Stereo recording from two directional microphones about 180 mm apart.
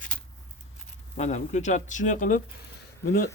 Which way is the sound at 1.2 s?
40° left (ahead or behind).